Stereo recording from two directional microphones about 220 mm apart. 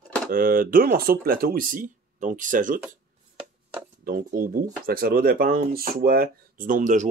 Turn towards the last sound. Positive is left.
turn(degrees=-35)  # may be behind; listen again after turning